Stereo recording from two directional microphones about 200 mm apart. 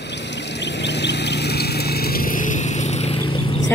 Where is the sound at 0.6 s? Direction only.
60° left (ahead or behind); by 3.3 s 30° left (ahead or behind).